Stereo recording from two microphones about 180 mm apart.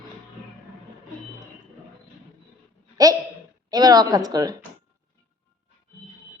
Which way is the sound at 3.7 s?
20° right (ahead or behind).